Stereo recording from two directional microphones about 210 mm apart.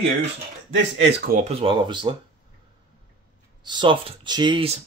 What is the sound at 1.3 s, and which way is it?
Speech, 30° right (ahead or behind).